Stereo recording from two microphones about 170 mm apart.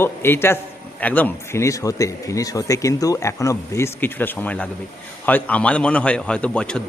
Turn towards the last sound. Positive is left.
turn(degrees=5)  # may be behind; listen again after turning